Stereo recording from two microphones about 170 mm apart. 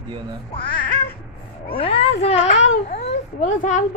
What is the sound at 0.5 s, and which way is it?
A child's voice, 30° left (ahead or behind).